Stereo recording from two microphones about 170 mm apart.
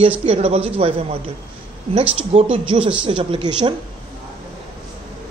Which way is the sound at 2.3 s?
30° right (ahead or behind).